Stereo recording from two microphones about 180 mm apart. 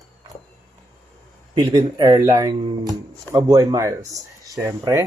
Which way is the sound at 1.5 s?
25° right (ahead or behind).